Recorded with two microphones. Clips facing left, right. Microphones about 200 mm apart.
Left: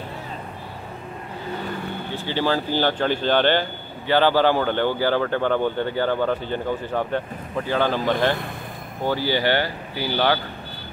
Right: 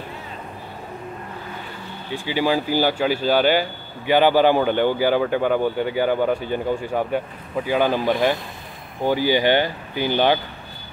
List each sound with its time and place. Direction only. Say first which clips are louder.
2.1 s speech: right 3 dB; 10° right (ahead or behind)